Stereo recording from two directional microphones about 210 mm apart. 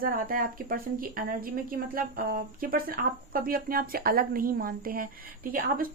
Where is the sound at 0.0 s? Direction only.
45° right (ahead or behind).